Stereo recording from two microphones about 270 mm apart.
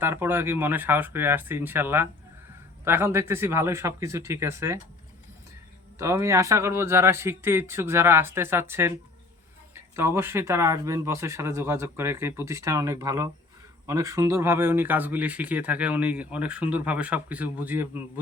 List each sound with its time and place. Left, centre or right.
0.0 s speech: centre
6.0 s speech: centre